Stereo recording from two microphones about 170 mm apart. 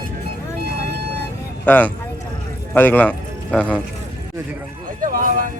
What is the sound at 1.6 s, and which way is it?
A man's voice, 10° left (ahead or behind).